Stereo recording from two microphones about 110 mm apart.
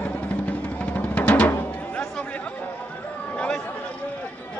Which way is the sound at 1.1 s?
15° left (ahead or behind).